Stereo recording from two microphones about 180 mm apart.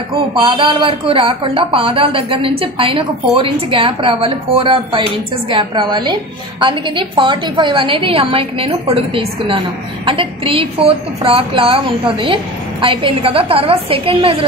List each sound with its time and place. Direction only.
0.3 s a woman's voice: 30° right (ahead or behind)